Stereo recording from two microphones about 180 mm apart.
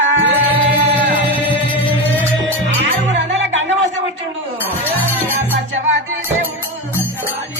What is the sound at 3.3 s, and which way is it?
Music, 85° right.